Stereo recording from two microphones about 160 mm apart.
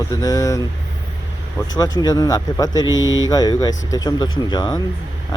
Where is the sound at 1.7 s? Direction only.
25° left (ahead or behind).